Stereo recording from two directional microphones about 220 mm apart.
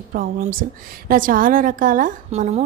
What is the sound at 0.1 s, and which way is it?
A woman's voice, 40° right (ahead or behind).